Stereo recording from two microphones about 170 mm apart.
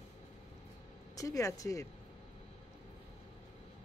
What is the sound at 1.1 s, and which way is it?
Speech, 20° left (ahead or behind).